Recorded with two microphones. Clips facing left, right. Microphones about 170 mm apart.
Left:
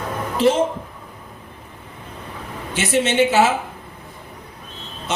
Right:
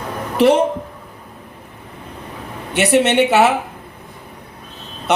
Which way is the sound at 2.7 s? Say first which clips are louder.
Right 4 dB; 65° right (ahead or behind).